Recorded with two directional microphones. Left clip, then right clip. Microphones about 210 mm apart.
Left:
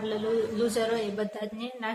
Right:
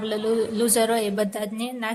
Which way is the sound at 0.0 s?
50° right (ahead or behind).